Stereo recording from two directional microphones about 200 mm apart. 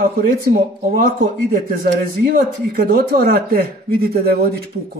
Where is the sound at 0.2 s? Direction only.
50° right (ahead or behind).